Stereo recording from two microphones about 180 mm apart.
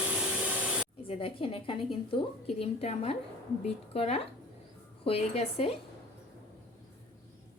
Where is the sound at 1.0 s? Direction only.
30° left (ahead or behind).